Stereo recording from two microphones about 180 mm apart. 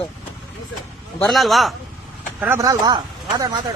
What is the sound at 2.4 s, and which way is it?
Speech, 15° right (ahead or behind).